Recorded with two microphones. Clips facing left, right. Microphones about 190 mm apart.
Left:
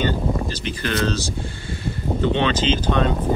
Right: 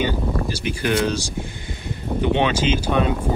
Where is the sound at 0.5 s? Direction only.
10° right (ahead or behind).